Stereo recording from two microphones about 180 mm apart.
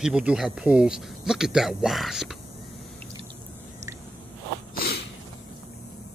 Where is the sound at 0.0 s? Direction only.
5° right (ahead or behind).